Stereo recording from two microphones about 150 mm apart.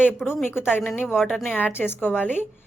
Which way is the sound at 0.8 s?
10° left (ahead or behind).